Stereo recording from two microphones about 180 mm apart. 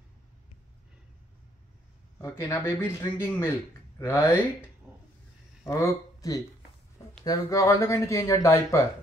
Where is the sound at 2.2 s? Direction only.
15° left (ahead or behind).